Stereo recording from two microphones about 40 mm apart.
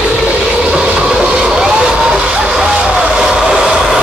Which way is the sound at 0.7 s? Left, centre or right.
Centre.